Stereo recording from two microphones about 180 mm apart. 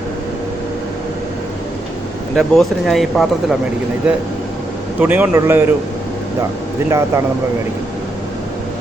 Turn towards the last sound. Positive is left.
turn(degrees=-15)  # may be behind; listen again after turning